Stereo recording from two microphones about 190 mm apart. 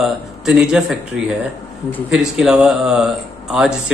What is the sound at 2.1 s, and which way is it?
A man's voice, centre (ahead or behind).